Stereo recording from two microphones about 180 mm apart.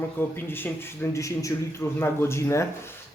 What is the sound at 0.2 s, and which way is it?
Speech, 10° left (ahead or behind).